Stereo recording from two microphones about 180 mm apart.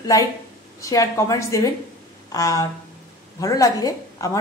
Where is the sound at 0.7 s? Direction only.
20° left (ahead or behind).